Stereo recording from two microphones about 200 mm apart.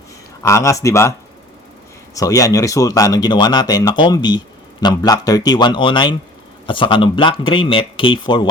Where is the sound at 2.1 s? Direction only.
15° left (ahead or behind).